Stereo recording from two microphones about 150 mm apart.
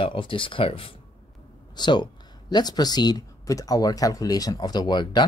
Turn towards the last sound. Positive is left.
turn(degrees=30)  # may be behind; listen again after turning